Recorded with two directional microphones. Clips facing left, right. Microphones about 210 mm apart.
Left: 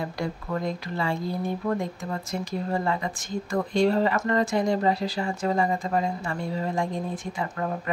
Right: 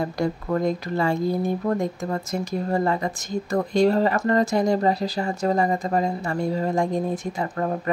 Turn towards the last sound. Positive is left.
turn(degrees=-40)  # may be behind; listen again after turning